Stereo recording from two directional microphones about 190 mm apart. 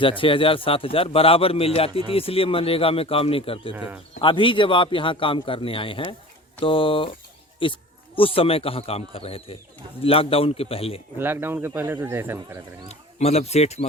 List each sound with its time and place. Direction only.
0.0 s a man's voice: 25° left (ahead or behind)
3.8 s speech: 5° right (ahead or behind)
4.1 s a man's voice: 25° left (ahead or behind)
11.2 s speech: 10° right (ahead or behind)
12.9 s a man's voice: 35° left (ahead or behind)